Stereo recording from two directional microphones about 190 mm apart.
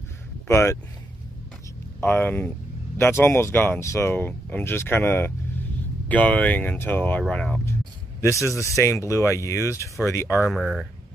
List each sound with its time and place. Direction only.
0.5 s speech: 15° left (ahead or behind)
2.0 s speech: 10° left (ahead or behind)
10.5 s speech: centre (ahead or behind)